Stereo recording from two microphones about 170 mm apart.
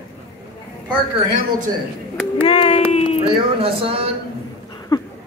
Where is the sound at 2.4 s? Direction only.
35° left (ahead or behind).